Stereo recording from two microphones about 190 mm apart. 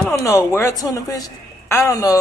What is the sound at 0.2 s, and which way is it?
A woman's voice, 15° left (ahead or behind).